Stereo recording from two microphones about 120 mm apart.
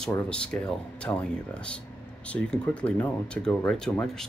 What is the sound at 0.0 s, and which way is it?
Speech, 10° left (ahead or behind).